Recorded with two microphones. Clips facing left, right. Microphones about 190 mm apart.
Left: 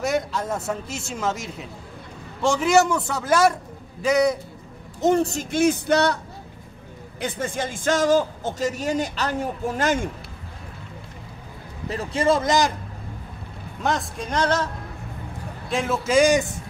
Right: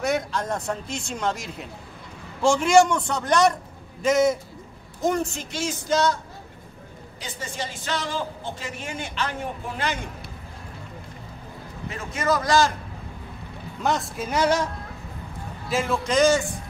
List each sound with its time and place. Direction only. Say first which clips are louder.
0.0 s speech: left 1 dB; centre (ahead or behind)
5.0 s speech: left 5 dB; 25° left (ahead or behind)
5.3 s speech: left 10 dB; 50° left (ahead or behind)
7.2 s a woman's voice: left 7 dB; 55° left (ahead or behind)
11.9 s speech: left 4 dB; 35° left (ahead or behind)
13.8 s speech: even; centre (ahead or behind)
15.7 s a man's voice: left 3 dB; centre (ahead or behind)